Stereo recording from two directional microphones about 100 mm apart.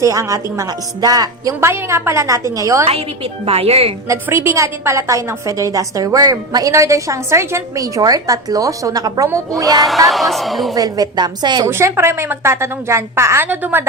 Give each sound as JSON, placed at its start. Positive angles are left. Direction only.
{"t": 0.0, "sound": "a woman's voice", "side_deg": -35}
{"t": 1.6, "sound": "a woman's voice", "side_deg": -25}
{"t": 3.4, "sound": "a woman's voice", "side_deg": -80}
{"t": 4.1, "sound": "a woman's voice", "side_deg": -25}
{"t": 10.1, "sound": "a woman's voice", "side_deg": 0}
{"t": 10.8, "sound": "a woman's voice", "side_deg": -40}
{"t": 11.6, "sound": "a woman's voice", "side_deg": -25}